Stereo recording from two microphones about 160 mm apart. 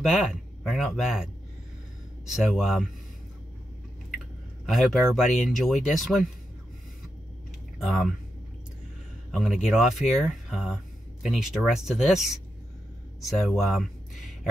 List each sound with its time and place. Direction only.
0.1 s speech: centre (ahead or behind)
4.6 s speech: centre (ahead or behind)
7.8 s speech: centre (ahead or behind)
9.3 s speech: centre (ahead or behind)